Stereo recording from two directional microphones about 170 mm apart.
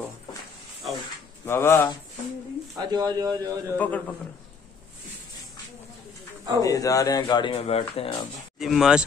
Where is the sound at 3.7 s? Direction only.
10° left (ahead or behind).